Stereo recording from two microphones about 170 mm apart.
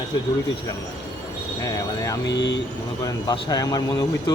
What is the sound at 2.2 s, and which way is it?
Speech, 90° left.